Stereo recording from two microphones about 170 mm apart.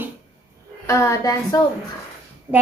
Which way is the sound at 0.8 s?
20° left (ahead or behind).